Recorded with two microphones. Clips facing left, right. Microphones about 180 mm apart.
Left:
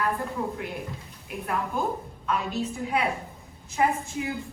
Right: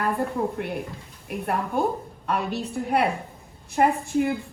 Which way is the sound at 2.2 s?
60° right (ahead or behind).